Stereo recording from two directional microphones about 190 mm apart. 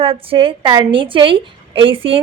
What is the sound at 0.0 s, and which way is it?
A woman's voice, 30° right (ahead or behind).